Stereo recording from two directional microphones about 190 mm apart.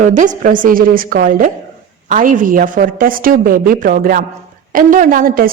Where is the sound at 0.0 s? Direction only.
40° right (ahead or behind).